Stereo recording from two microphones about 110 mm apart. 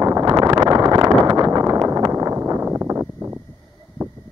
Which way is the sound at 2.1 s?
30° right (ahead or behind).